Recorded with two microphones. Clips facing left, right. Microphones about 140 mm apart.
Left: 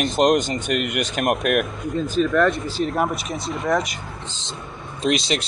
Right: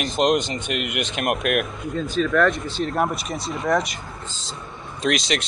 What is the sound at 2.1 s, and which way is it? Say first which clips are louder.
Speech: left 1 dB; centre (ahead or behind).